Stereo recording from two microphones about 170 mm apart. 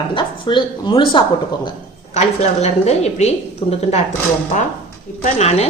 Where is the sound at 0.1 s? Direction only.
30° left (ahead or behind).